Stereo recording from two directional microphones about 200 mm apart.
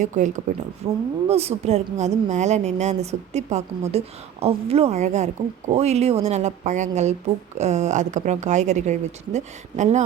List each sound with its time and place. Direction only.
0.0 s a woman's voice: 40° right (ahead or behind)